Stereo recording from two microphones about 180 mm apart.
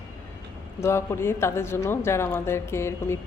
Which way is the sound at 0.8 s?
15° left (ahead or behind).